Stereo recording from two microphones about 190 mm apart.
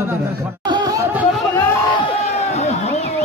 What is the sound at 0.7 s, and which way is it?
Snicker, 20° right (ahead or behind).